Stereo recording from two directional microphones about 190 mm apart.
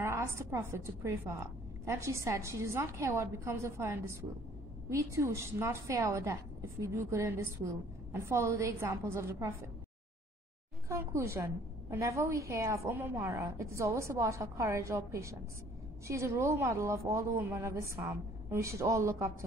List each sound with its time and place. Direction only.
0.0 s a woman's voice: 15° right (ahead or behind)
10.9 s a woman's voice: 15° right (ahead or behind)